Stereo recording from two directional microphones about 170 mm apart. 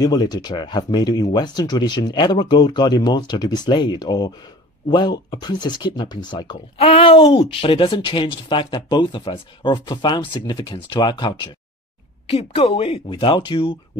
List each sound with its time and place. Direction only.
0.0 s speech: 25° left (ahead or behind)